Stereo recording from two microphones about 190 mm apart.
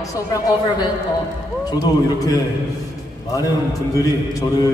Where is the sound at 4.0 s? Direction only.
20° left (ahead or behind).